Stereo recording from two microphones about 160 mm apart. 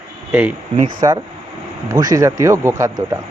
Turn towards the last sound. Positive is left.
turn(degrees=-20)  # may be behind; listen again after turning